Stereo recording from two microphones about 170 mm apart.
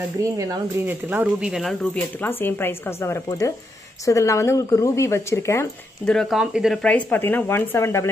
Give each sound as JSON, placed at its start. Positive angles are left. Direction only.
{"t": 0.2, "sound": "speech", "side_deg": -20}
{"t": 2.2, "sound": "speech", "side_deg": 15}
{"t": 6.0, "sound": "speech", "side_deg": 0}